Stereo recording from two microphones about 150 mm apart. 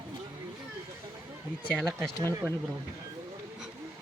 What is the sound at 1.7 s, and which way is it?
Speech, 5° left (ahead or behind).